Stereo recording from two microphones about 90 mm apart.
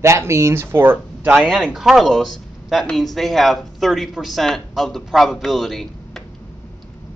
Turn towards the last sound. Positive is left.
turn(degrees=5)  # may be behind; listen again after turning